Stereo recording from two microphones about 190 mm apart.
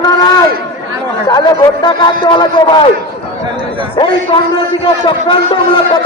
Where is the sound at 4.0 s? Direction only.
25° left (ahead or behind).